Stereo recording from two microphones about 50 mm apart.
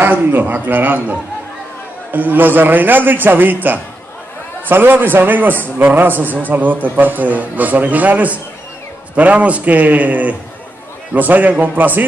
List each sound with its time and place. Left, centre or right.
0.0 s speech: right
2.1 s a man's voice: right